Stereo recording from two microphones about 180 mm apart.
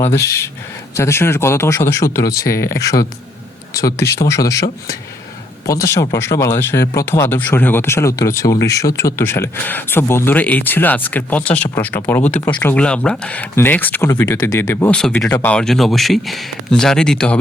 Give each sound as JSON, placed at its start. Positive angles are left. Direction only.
{"t": 0.1, "sound": "a man's voice", "side_deg": 15}